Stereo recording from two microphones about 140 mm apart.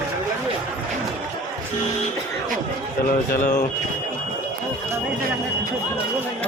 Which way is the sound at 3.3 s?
65° left (ahead or behind).